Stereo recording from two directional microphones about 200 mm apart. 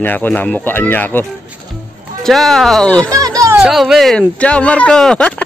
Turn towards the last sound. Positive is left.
turn(degrees=5)  # may be behind; listen again after turning